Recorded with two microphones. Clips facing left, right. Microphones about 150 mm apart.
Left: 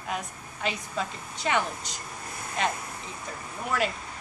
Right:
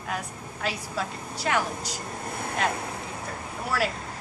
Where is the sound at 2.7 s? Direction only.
65° right (ahead or behind).